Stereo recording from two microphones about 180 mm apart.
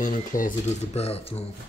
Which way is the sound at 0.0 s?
50° left (ahead or behind).